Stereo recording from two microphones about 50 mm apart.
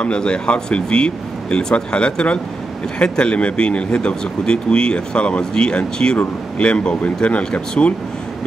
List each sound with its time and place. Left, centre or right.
0.0 s speech: centre